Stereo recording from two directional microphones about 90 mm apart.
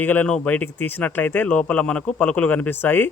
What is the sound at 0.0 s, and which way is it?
Speech, 20° left (ahead or behind).